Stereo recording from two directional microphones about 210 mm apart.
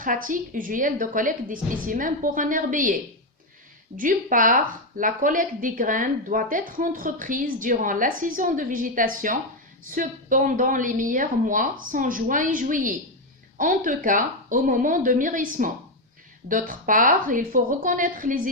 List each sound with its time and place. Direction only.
0.0 s speech: 40° right (ahead or behind)